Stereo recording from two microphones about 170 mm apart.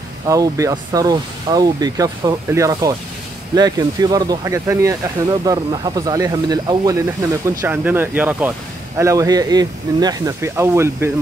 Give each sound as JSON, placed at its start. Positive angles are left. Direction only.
{"t": 0.3, "sound": "speech", "side_deg": -20}